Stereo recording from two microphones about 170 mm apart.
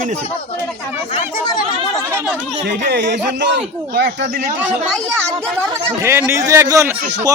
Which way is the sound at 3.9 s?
75° right (ahead or behind).